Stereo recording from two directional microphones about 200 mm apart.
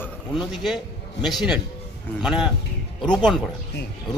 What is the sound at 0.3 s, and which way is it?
A man's voice, centre (ahead or behind).